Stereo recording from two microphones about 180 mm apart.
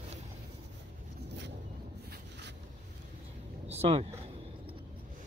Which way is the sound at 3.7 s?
35° right (ahead or behind).